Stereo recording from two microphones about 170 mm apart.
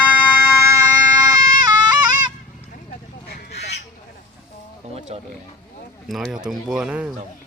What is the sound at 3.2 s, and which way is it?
Honk, 70° left (ahead or behind).